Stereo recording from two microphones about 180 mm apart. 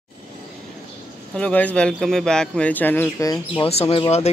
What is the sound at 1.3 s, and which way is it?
Speech, 5° left (ahead or behind).